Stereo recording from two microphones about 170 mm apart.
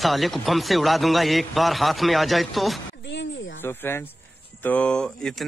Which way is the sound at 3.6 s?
15° left (ahead or behind).